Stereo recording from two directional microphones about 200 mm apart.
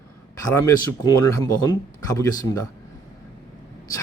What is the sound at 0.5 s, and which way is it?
Speech, 15° left (ahead or behind).